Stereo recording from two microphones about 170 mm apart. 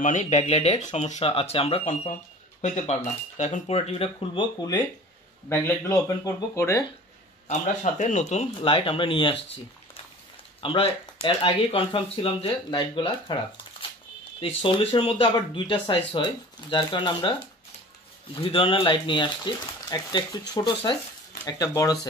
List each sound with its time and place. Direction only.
0.0 s speech: 45° left (ahead or behind)
4.6 s speech: 20° left (ahead or behind)
7.4 s speech: 45° left (ahead or behind); by 9.4 s 30° left (ahead or behind)
10.6 s speech: 30° left (ahead or behind)
14.6 s speech: 30° left (ahead or behind)